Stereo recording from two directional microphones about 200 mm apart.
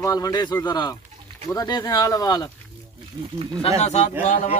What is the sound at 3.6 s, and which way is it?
Speech, 30° left (ahead or behind).